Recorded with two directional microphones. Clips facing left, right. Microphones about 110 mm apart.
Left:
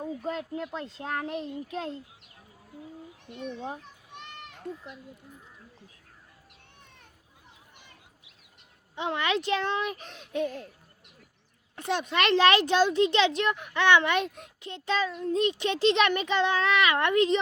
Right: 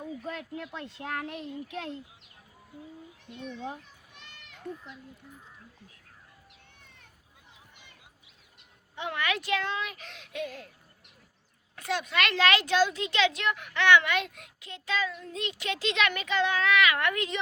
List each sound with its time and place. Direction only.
0.0 s a child's voice: 30° left (ahead or behind)
9.0 s a child's voice: 25° left (ahead or behind)
11.8 s a child's voice: 25° left (ahead or behind)